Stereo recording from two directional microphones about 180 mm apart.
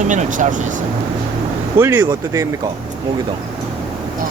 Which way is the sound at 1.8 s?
15° right (ahead or behind).